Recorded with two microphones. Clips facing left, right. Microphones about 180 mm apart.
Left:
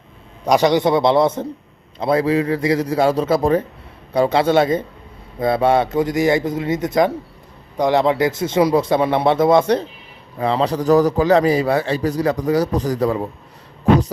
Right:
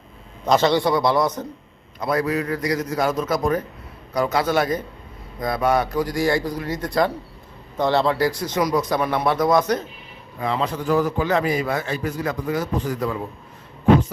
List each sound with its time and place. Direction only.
0.4 s a man's voice: 15° left (ahead or behind); by 13.2 s 35° left (ahead or behind)